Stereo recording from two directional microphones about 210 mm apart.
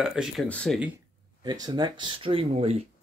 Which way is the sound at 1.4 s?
20° right (ahead or behind).